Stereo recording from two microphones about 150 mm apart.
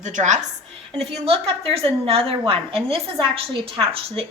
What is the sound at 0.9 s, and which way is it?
A woman's voice, 40° right (ahead or behind).